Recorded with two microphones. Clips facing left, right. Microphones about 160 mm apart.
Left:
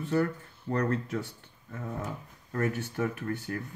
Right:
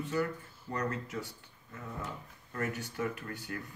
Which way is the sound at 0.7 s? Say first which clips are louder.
Left 7 dB; 55° left (ahead or behind).